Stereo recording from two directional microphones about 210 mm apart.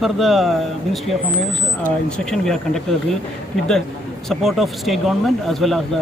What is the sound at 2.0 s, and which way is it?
Speech, 5° left (ahead or behind).